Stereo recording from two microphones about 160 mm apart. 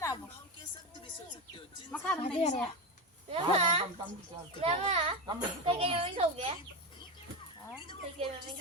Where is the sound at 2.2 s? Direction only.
45° left (ahead or behind).